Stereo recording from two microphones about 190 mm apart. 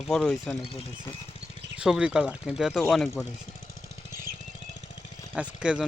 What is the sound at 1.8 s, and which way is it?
Speech, 5° right (ahead or behind).